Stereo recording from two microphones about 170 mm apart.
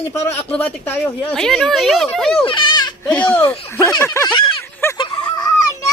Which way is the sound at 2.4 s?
30° left (ahead or behind).